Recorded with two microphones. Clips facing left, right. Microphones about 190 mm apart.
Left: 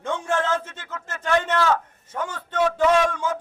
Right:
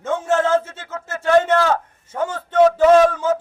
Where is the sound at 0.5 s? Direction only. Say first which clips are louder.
Right 10 dB; 45° right (ahead or behind).